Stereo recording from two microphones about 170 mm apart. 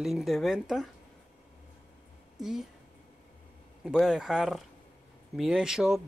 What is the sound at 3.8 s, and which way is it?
Speech, 5° right (ahead or behind).